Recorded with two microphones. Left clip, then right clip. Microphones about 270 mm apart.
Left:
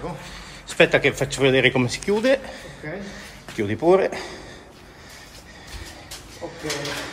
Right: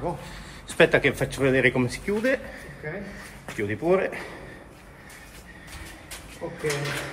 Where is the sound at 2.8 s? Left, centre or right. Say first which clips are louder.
Left 1 dB; left.